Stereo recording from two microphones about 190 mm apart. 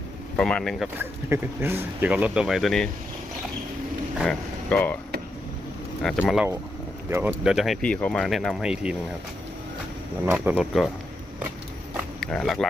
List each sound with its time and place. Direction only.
0.3 s speech: 5° left (ahead or behind)
0.9 s speech: 10° right (ahead or behind)
4.2 s speech: 5° left (ahead or behind)
6.0 s speech: centre (ahead or behind)
7.1 s speech: 10° right (ahead or behind)
10.3 s speech: 5° right (ahead or behind)
12.2 s speech: centre (ahead or behind)